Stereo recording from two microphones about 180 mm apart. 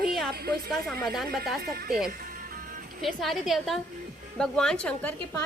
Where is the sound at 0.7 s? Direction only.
Centre (ahead or behind).